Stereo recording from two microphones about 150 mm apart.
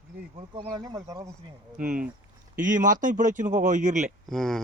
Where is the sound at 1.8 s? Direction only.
70° right (ahead or behind).